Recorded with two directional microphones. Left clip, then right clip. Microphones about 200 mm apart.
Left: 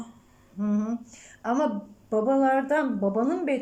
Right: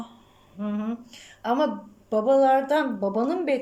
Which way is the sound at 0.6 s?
10° left (ahead or behind).